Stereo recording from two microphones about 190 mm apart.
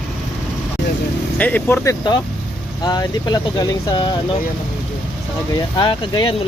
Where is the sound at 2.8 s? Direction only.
20° left (ahead or behind).